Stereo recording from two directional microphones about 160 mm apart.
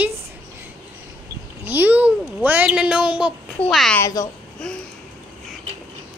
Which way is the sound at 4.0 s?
20° left (ahead or behind).